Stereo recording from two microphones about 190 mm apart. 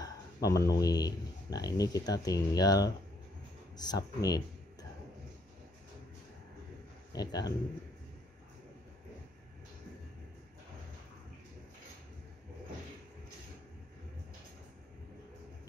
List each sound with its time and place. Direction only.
0.0 s a sound: 15° left (ahead or behind)
0.7 s speech: 20° left (ahead or behind)
7.1 s a man's voice: 20° left (ahead or behind)